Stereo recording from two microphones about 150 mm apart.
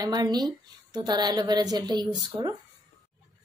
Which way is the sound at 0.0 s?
25° right (ahead or behind).